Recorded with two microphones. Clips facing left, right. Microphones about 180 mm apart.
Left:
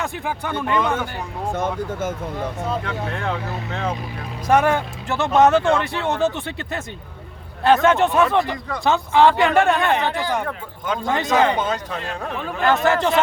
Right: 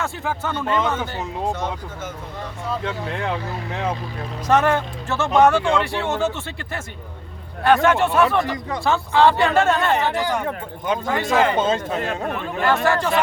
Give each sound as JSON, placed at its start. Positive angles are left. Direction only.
{"t": 0.0, "sound": "speech", "side_deg": 15}
{"t": 1.5, "sound": "speech", "side_deg": 50}
{"t": 2.8, "sound": "speech", "side_deg": -20}
{"t": 4.4, "sound": "speech", "side_deg": 10}
{"t": 10.4, "sound": "speech", "side_deg": -20}
{"t": 11.0, "sound": "speech", "side_deg": 20}
{"t": 11.5, "sound": "speech", "side_deg": -25}
{"t": 12.8, "sound": "speech", "side_deg": 20}